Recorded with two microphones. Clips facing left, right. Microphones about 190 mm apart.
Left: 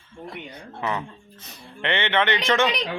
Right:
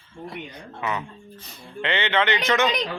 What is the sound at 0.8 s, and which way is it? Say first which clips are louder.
Speech: left 1 dB; 25° left (ahead or behind).